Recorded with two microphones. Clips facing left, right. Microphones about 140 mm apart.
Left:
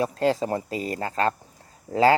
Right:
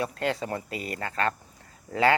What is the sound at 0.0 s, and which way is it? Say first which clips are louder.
Speech: left 6 dB; 35° left (ahead or behind).